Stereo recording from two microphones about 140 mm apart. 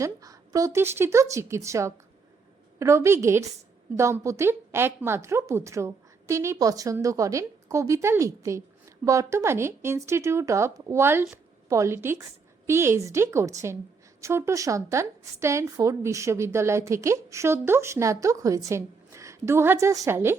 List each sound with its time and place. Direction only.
0.0 s a woman's voice: 25° right (ahead or behind)